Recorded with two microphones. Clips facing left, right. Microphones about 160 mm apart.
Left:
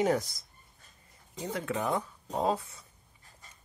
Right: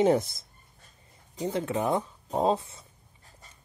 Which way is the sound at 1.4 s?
25° right (ahead or behind).